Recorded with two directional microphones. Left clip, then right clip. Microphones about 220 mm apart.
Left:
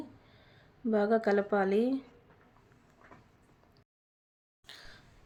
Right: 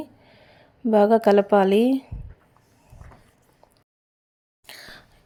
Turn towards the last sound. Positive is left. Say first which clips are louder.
# right 9 dB
turn(degrees=-35)  # may be behind; listen again after turning